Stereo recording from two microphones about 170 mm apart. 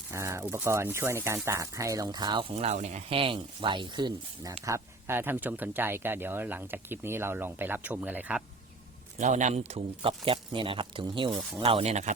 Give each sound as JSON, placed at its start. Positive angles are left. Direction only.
{"t": 0.1, "sound": "speech", "side_deg": -15}
{"t": 2.6, "sound": "speech", "side_deg": -40}
{"t": 4.6, "sound": "speech", "side_deg": -15}
{"t": 9.1, "sound": "speech", "side_deg": -45}
{"t": 11.6, "sound": "speech", "side_deg": -35}